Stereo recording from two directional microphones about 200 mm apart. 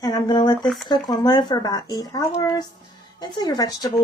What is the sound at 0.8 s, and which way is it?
Speech, 20° left (ahead or behind).